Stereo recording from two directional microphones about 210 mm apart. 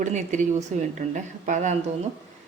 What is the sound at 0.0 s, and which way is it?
A woman's voice, 35° right (ahead or behind).